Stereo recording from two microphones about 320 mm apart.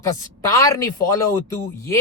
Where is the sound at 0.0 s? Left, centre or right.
Centre.